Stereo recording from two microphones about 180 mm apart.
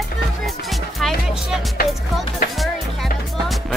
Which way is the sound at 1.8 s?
55° left (ahead or behind).